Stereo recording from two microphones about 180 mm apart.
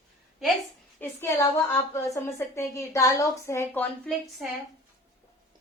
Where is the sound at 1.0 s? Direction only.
15° left (ahead or behind).